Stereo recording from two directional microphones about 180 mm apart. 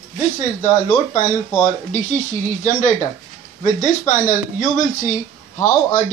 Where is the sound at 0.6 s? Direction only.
45° left (ahead or behind).